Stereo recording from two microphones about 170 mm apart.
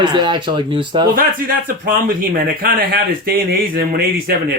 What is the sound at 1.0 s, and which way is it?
Speech, 55° right (ahead or behind).